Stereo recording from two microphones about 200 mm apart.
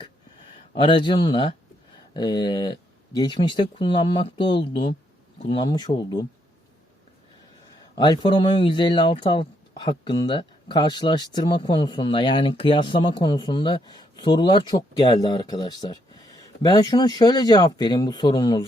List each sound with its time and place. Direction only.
0.7 s speech: 25° left (ahead or behind)
5.6 s speech: 20° left (ahead or behind)
7.9 s speech: 20° left (ahead or behind)